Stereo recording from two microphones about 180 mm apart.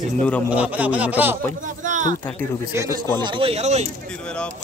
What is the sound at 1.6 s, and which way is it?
Speech, 45° right (ahead or behind).